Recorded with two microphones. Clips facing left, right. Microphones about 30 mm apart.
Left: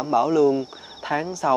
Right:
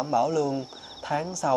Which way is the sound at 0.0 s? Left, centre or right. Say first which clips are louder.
Left 6 dB; left.